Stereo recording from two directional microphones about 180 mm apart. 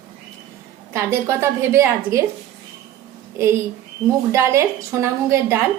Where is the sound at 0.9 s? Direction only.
15° right (ahead or behind).